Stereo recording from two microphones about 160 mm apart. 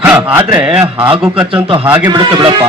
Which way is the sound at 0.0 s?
10° right (ahead or behind).